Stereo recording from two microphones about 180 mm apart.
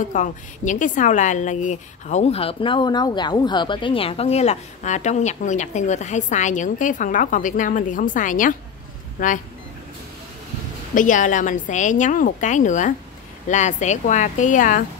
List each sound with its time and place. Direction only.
0.1 s a woman's voice: 45° left (ahead or behind)
11.0 s a woman's voice: 45° left (ahead or behind)